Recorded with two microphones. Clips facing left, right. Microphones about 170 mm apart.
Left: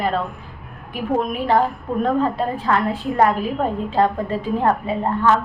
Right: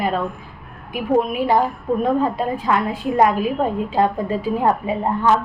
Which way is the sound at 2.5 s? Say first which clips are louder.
Even; 10° right (ahead or behind).